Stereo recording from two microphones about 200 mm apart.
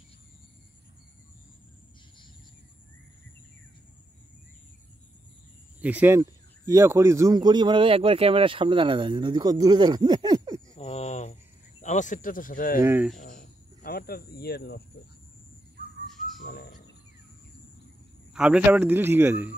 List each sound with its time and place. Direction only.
5.8 s speech: 10° right (ahead or behind)
10.7 s speech: 30° left (ahead or behind)
12.8 s a man's voice: 10° right (ahead or behind)
13.2 s cricket: 40° left (ahead or behind)
16.3 s cricket: 50° left (ahead or behind)
18.3 s a man's voice: 5° right (ahead or behind)